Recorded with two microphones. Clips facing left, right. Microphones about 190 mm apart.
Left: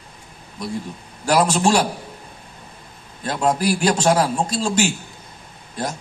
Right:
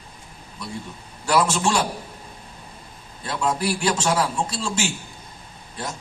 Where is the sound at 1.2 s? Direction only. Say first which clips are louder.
Left 3 dB; 35° left (ahead or behind).